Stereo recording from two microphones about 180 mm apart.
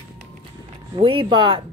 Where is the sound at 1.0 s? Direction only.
30° right (ahead or behind).